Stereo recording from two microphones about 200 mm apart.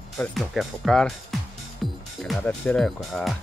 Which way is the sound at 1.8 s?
Centre (ahead or behind).